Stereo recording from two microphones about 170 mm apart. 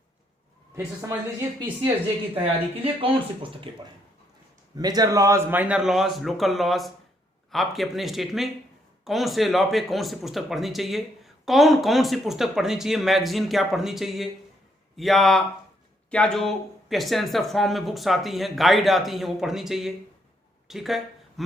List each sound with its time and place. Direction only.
2.4 s speech: 35° right (ahead or behind)
4.8 s speech: 25° right (ahead or behind); by 19.9 s centre (ahead or behind)
20.7 s a sound: centre (ahead or behind)